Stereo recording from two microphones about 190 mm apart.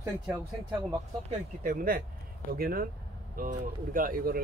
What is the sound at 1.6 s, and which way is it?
Speech, 45° right (ahead or behind).